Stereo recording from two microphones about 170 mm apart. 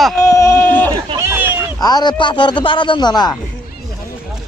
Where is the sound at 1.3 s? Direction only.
10° right (ahead or behind).